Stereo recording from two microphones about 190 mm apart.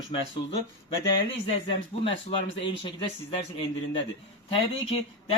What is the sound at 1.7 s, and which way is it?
Speech, 30° left (ahead or behind).